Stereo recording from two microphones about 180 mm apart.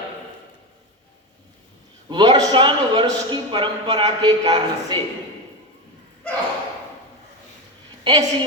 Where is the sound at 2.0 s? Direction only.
25° right (ahead or behind).